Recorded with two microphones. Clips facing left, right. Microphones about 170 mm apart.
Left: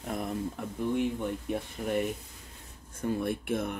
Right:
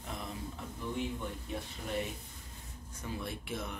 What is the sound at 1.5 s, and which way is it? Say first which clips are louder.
Speech: left 7 dB; 55° left (ahead or behind).